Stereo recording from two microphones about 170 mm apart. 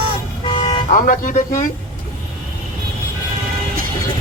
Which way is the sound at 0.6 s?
50° left (ahead or behind).